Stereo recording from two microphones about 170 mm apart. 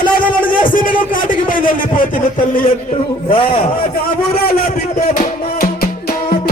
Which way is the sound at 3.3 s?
30° left (ahead or behind).